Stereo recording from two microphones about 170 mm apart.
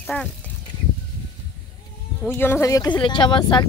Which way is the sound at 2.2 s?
15° left (ahead or behind).